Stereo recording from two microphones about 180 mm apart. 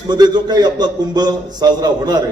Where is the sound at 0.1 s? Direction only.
25° right (ahead or behind).